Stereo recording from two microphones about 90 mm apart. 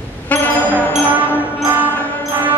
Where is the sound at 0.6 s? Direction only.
20° right (ahead or behind).